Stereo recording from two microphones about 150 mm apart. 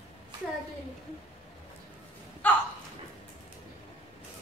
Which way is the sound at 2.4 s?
10° left (ahead or behind).